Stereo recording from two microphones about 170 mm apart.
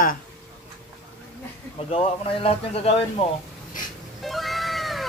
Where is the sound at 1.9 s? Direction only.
35° left (ahead or behind).